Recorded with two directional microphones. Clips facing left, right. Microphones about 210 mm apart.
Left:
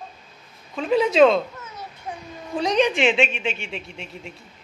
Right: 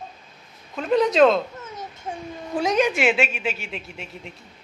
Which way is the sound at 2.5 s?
5° right (ahead or behind).